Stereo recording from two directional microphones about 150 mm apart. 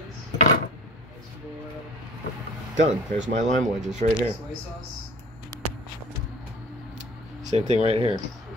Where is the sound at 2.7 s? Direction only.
55° right (ahead or behind).